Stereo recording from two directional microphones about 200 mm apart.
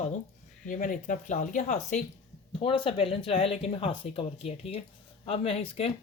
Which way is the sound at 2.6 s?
25° left (ahead or behind).